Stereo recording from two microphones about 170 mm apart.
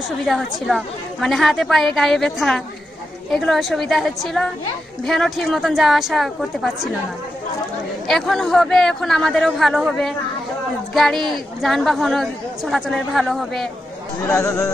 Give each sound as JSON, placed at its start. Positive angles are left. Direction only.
{"t": 0.3, "sound": "a woman's voice", "side_deg": 0}
{"t": 8.1, "sound": "a woman's voice", "side_deg": 0}
{"t": 14.2, "sound": "speech", "side_deg": 15}